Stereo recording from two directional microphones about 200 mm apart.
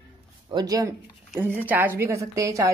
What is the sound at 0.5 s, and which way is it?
A woman's voice, 15° right (ahead or behind).